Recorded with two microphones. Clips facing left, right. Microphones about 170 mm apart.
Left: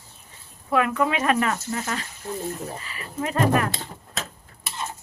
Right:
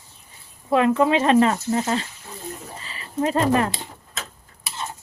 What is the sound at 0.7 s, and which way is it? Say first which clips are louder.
Speech: right 5 dB; 25° right (ahead or behind).